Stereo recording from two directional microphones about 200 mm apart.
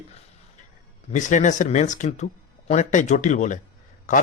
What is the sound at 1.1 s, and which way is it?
Speech, 40° left (ahead or behind).